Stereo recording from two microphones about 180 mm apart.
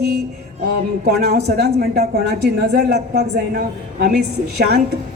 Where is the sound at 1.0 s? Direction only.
60° right (ahead or behind).